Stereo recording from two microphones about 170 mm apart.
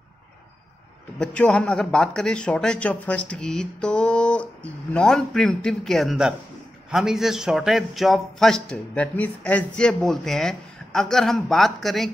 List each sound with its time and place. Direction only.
1.2 s a man's voice: 5° left (ahead or behind)